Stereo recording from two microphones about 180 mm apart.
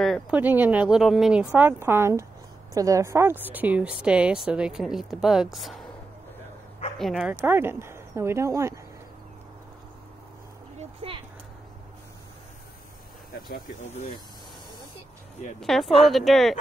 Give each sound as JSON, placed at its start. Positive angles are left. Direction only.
{"t": 0.0, "sound": "a woman's voice", "side_deg": -5}
{"t": 7.0, "sound": "a woman's voice", "side_deg": 0}
{"t": 7.3, "sound": "speech", "side_deg": -10}
{"t": 10.8, "sound": "a sound", "side_deg": -35}
{"t": 15.6, "sound": "a woman's voice", "side_deg": 0}